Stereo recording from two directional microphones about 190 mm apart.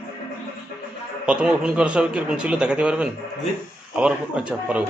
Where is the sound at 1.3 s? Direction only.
5° right (ahead or behind).